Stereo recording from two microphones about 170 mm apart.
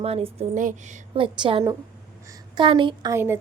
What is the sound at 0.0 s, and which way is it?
Speech, 35° right (ahead or behind).